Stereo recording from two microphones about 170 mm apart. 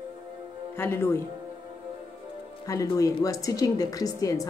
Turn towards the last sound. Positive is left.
turn(degrees=20)  # may be behind; listen again after turning